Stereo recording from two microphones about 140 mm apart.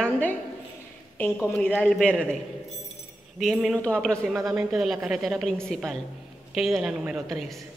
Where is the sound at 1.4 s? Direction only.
15° left (ahead or behind).